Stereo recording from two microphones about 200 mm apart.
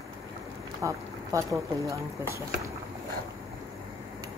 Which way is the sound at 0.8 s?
15° right (ahead or behind).